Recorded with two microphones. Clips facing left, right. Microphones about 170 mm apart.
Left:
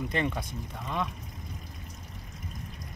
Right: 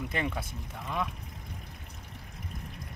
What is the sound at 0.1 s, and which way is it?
Speech, 5° right (ahead or behind).